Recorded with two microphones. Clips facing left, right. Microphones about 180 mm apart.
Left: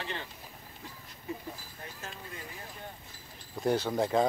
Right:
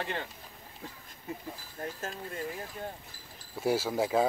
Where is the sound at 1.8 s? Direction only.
45° right (ahead or behind).